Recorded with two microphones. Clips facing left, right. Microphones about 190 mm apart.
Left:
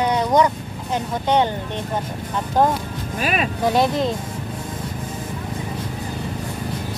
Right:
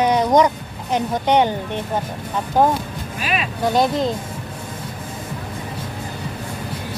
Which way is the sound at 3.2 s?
45° left (ahead or behind).